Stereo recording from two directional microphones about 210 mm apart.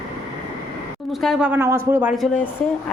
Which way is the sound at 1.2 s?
Centre (ahead or behind).